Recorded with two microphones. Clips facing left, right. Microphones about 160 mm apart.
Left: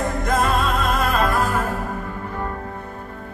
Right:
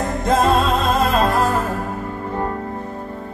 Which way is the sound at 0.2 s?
30° right (ahead or behind).